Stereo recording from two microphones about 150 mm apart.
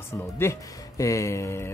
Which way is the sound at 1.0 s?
20° left (ahead or behind).